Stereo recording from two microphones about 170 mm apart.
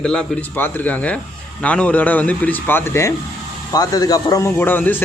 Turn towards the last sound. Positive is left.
turn(degrees=10)  # may be behind; listen again after turning